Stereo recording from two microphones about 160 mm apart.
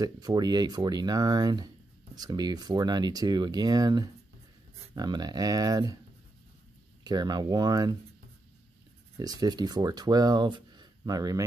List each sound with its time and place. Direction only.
0.0 s speech: 25° right (ahead or behind)
7.1 s speech: 25° right (ahead or behind)
9.2 s speech: 25° right (ahead or behind)